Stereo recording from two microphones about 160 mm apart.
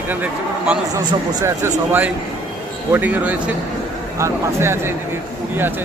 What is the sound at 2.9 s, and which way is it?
Speech, 10° right (ahead or behind).